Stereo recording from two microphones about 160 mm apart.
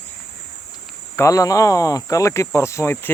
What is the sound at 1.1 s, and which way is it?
Speech, 20° left (ahead or behind).